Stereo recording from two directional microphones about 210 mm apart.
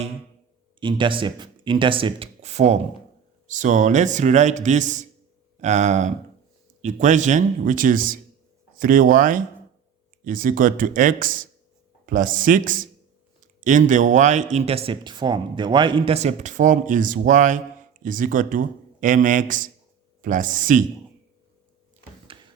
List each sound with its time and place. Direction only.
0.8 s speech: 25° right (ahead or behind); by 20.8 s 40° right (ahead or behind)